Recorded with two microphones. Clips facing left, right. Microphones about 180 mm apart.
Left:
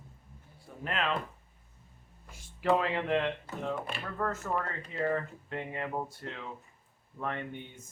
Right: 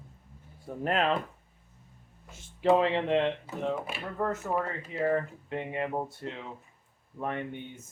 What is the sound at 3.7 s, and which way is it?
Speech, 5° right (ahead or behind).